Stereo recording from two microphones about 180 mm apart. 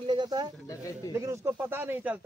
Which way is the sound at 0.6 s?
20° left (ahead or behind).